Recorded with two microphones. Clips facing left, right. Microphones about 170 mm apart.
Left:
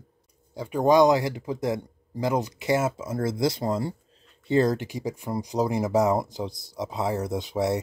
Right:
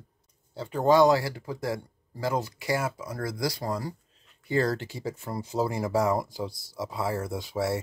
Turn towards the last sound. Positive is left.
turn(degrees=20)  # may be behind; listen again after turning